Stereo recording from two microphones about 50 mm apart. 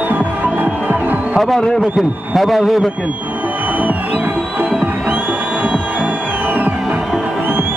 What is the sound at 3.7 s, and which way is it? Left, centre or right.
Music, right.